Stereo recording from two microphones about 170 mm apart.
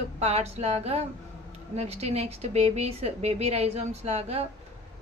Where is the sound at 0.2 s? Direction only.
40° right (ahead or behind).